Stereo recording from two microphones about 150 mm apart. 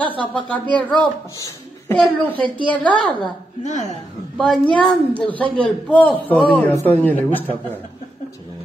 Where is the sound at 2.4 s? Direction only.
10° left (ahead or behind).